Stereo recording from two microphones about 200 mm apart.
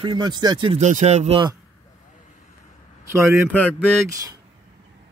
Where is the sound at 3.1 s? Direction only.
15° right (ahead or behind).